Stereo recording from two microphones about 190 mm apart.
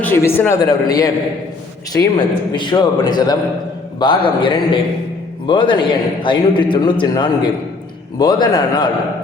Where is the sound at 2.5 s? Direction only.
25° left (ahead or behind).